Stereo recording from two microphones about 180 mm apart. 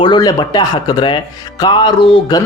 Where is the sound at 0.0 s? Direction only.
25° left (ahead or behind).